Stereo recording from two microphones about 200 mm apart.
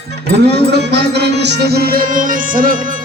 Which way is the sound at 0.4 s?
55° right (ahead or behind).